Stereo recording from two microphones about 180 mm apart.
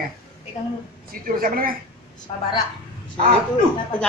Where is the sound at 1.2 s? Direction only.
50° right (ahead or behind).